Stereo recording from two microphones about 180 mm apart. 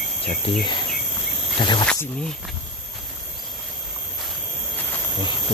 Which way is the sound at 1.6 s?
25° left (ahead or behind).